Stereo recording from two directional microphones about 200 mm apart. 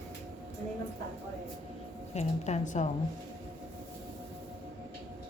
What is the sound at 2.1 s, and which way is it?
Speech, 35° left (ahead or behind).